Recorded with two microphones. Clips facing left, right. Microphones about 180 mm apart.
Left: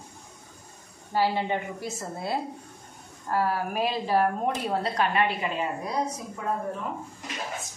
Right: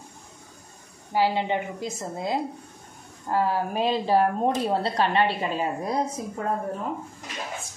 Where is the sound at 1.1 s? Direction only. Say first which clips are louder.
Right 2 dB; 15° right (ahead or behind); by 5.7 s 30° right (ahead or behind).